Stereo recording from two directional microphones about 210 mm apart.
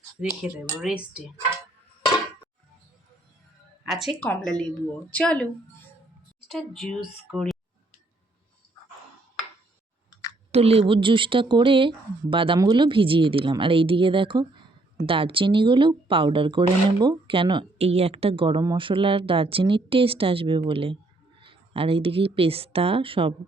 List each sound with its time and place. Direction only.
0.4 s speech: 5° right (ahead or behind)
3.8 s speech: centre (ahead or behind)
6.5 s speech: centre (ahead or behind)
10.5 s speech: 30° right (ahead or behind)